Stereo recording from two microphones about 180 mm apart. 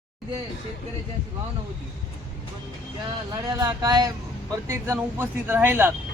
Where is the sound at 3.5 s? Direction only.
20° right (ahead or behind).